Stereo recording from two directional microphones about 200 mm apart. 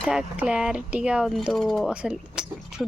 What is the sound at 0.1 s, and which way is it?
Speech, 5° right (ahead or behind).